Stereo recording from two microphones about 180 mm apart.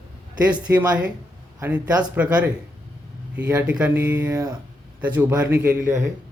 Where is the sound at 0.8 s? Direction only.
5° right (ahead or behind).